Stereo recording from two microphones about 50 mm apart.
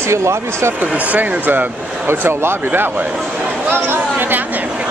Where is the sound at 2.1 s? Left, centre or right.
Right.